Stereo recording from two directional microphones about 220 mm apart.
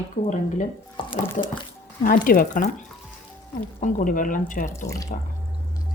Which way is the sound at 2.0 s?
40° left (ahead or behind).